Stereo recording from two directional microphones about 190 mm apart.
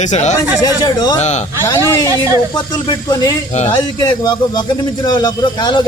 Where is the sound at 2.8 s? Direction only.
20° left (ahead or behind).